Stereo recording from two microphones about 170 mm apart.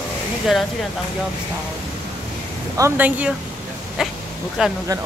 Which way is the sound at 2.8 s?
15° right (ahead or behind).